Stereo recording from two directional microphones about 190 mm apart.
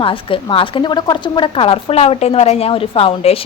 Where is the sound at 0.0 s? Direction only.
25° left (ahead or behind).